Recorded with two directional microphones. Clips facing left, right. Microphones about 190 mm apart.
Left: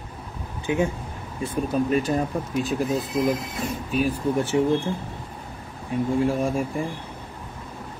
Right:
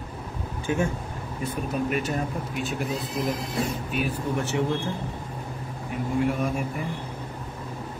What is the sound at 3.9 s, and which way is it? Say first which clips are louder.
Speech: left 6 dB; 35° left (ahead or behind).